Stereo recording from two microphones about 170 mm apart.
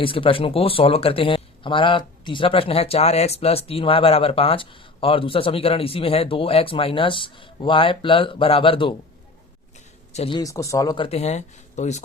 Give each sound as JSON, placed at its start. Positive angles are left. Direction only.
{"t": 0.0, "sound": "speech", "side_deg": 30}
{"t": 10.1, "sound": "a sound", "side_deg": 40}
{"t": 10.3, "sound": "speech", "side_deg": 20}